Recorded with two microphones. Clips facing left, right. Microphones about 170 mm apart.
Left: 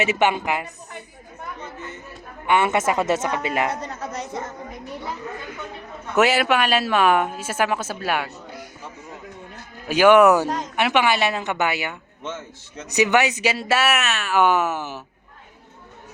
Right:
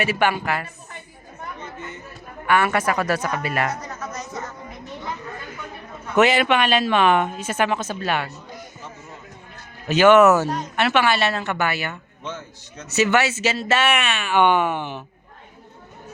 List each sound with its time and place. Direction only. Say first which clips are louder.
0.0 s a woman's voice: left 1 dB; 20° left (ahead or behind)
2.5 s a woman's voice: left 1 dB; 20° left (ahead or behind)
6.1 s speech: right 1 dB; 5° left (ahead or behind)
9.9 s speech: even; 10° left (ahead or behind)